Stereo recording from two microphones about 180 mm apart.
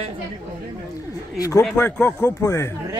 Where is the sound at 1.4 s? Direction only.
20° left (ahead or behind).